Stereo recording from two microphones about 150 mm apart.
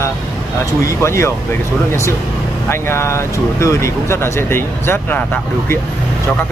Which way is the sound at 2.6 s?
15° left (ahead or behind).